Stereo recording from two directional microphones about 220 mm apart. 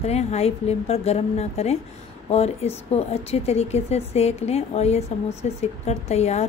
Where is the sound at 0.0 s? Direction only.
30° left (ahead or behind).